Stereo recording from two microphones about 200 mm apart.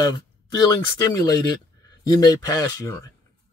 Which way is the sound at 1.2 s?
20° left (ahead or behind).